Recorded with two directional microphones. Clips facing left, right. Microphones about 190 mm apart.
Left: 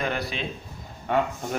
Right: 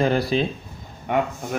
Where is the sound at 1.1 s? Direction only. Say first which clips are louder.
Right 2 dB; 15° right (ahead or behind).